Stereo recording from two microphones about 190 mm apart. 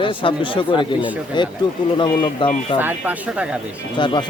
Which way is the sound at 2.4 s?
25° left (ahead or behind).